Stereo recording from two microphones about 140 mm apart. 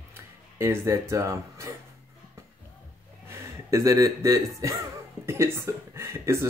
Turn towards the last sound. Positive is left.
turn(degrees=-20)  # may be behind; listen again after turning